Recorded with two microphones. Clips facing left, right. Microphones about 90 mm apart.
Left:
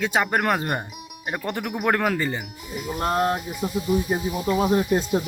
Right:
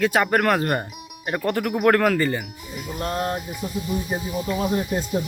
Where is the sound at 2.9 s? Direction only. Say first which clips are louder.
Left 3 dB; 50° left (ahead or behind).